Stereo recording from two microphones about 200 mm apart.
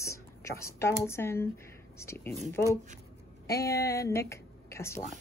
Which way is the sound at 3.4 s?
15° left (ahead or behind).